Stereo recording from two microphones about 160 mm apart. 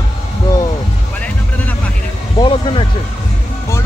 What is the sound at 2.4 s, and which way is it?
Speech, 30° left (ahead or behind).